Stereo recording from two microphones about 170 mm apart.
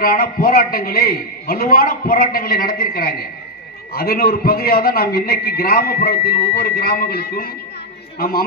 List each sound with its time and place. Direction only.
0.0 s a man's voice: 60° left (ahead or behind)